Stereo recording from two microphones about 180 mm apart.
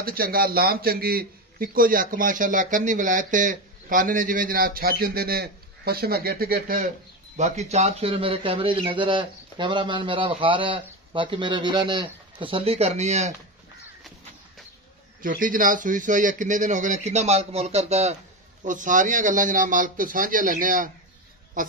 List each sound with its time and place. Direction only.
0.0 s a man's voice: 55° right (ahead or behind)
7.3 s speech: 40° right (ahead or behind)
15.2 s a man's voice: 50° right (ahead or behind)